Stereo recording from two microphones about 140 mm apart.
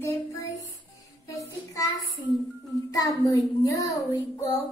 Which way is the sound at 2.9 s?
25° left (ahead or behind).